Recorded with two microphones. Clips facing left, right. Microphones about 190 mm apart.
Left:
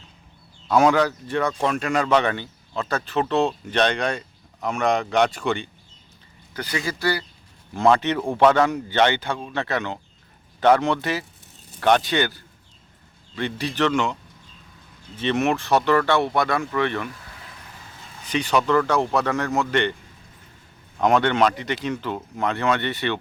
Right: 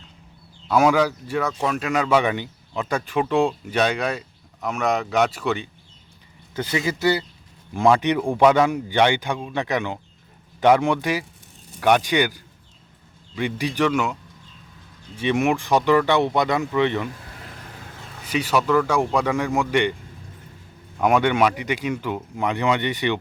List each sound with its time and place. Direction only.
0.7 s speech: 5° right (ahead or behind)
6.5 s a man's voice: 25° right (ahead or behind)
18.3 s a man's voice: 5° right (ahead or behind)
21.0 s a man's voice: 10° right (ahead or behind)